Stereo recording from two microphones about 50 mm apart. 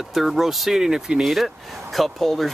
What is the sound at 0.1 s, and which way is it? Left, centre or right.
Speech, centre.